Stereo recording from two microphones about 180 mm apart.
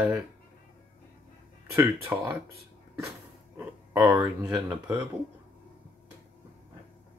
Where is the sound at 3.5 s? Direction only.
10° right (ahead or behind).